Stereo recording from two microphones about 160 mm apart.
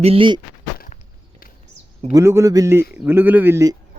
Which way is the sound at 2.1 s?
15° right (ahead or behind).